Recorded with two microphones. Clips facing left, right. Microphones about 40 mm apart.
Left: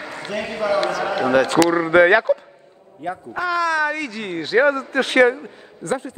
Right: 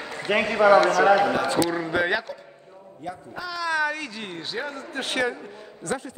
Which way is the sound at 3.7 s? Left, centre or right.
Left.